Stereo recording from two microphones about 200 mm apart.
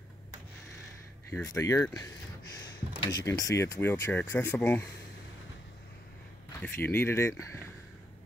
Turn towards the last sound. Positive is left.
turn(degrees=15)  # may be behind; listen again after turning